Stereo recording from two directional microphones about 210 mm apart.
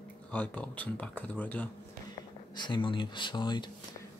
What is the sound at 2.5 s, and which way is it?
Speech, 20° left (ahead or behind).